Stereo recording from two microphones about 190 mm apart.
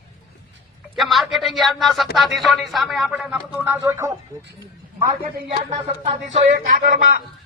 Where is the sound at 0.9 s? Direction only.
Centre (ahead or behind).